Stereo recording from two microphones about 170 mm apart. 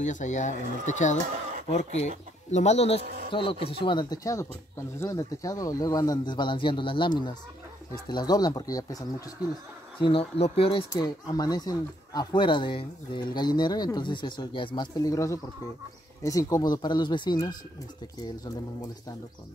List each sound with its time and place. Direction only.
0.0 s speech: 45° left (ahead or behind); by 9.0 s 20° left (ahead or behind)
10.0 s speech: 35° left (ahead or behind)